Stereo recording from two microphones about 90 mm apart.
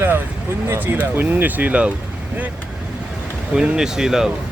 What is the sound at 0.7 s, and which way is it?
Speech, 20° right (ahead or behind).